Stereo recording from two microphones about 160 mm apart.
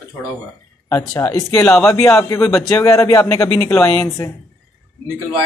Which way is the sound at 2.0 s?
15° left (ahead or behind).